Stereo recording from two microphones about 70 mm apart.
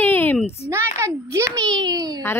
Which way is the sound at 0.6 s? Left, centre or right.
Right.